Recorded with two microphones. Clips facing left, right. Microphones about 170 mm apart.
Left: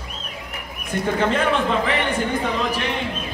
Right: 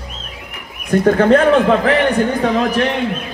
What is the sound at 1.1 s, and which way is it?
Speech, 65° right (ahead or behind).